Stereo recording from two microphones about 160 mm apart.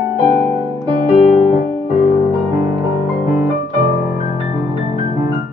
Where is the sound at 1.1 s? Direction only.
40° left (ahead or behind).